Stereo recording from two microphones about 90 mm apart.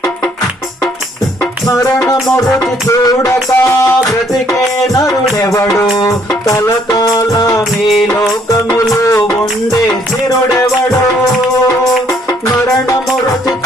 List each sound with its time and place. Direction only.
1.6 s music: 35° left (ahead or behind)
4.9 s music: 40° left (ahead or behind)